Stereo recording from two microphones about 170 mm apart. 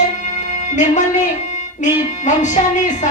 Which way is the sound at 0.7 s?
45° left (ahead or behind).